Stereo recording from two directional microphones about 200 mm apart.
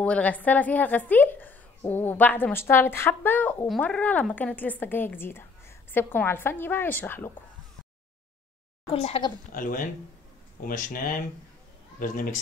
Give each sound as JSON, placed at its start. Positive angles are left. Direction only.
{"t": 0.0, "sound": "a woman's voice", "side_deg": 5}
{"t": 8.9, "sound": "speech", "side_deg": 30}
{"t": 9.5, "sound": "speech", "side_deg": 45}